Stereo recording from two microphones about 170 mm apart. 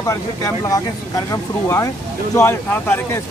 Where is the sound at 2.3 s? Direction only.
15° left (ahead or behind).